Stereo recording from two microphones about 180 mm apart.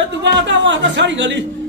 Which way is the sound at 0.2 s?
80° right.